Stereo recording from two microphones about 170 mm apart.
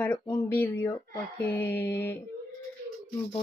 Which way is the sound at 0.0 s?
15° left (ahead or behind).